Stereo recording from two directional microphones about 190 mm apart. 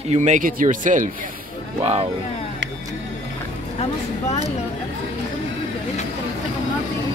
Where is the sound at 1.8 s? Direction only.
35° right (ahead or behind).